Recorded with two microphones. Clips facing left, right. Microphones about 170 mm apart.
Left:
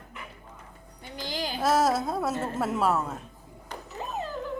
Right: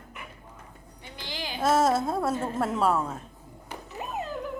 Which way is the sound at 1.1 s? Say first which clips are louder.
Left 4 dB; 40° left (ahead or behind).